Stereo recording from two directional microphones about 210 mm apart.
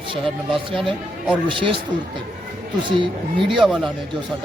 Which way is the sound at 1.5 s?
25° right (ahead or behind).